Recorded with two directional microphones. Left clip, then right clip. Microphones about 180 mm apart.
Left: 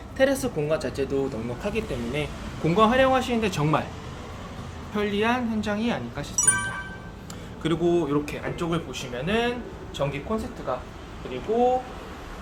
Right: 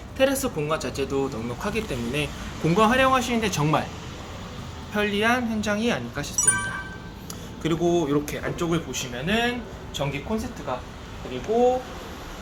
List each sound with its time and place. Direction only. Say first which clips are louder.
0.2 s speech: even; centre (ahead or behind)
1.6 s speech: right 1 dB; 15° right (ahead or behind)
2.6 s speech: even; 5° right (ahead or behind)
4.9 s speech: right 2 dB; 5° right (ahead or behind)